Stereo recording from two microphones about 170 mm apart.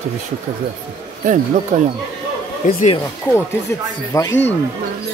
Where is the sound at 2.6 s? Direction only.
50° left (ahead or behind).